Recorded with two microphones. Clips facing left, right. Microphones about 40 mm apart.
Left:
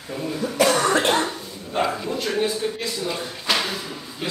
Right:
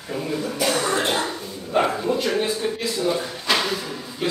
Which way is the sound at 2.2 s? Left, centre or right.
Centre.